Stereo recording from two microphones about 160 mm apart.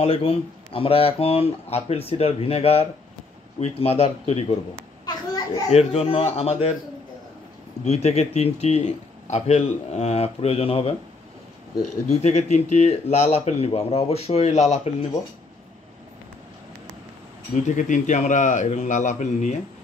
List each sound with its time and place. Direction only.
0.0 s speech: 40° left (ahead or behind)
5.7 s speech: 40° left (ahead or behind)
7.8 s speech: 40° left (ahead or behind)
12.1 s speech: 45° left (ahead or behind)
17.6 s speech: 50° left (ahead or behind)